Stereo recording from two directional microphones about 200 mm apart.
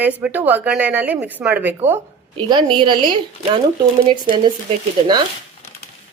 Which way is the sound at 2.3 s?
20° right (ahead or behind).